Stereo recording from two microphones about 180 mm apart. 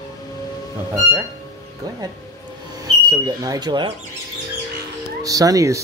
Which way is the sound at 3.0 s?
20° right (ahead or behind).